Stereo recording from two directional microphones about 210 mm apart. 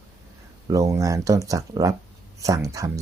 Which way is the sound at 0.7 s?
15° right (ahead or behind).